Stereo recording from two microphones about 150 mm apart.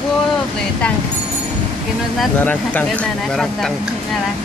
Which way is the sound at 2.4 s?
10° left (ahead or behind).